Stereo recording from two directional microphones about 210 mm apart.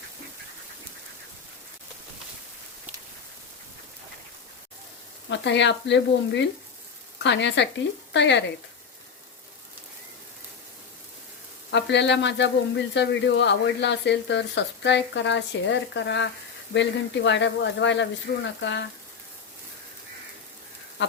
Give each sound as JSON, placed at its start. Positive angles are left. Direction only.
{"t": 5.3, "sound": "speech", "side_deg": 55}
{"t": 11.7, "sound": "speech", "side_deg": 55}